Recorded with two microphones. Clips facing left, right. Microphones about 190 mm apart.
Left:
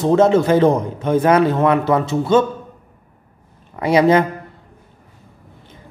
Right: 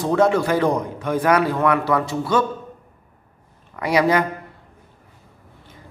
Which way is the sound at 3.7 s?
25° left (ahead or behind).